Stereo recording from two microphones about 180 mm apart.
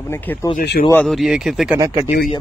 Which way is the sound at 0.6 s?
55° left (ahead or behind).